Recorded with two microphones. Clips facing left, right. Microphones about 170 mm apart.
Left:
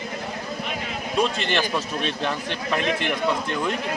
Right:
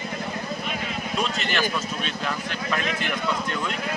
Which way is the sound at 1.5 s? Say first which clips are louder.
Left 2 dB; 30° left (ahead or behind).